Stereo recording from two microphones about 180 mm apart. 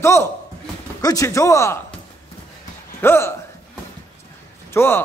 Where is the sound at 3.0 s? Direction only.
15° left (ahead or behind).